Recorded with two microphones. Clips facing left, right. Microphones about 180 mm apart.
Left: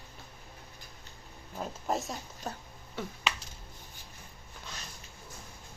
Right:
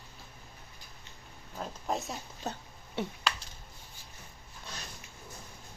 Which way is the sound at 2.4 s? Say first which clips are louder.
Right 2 dB; 20° right (ahead or behind).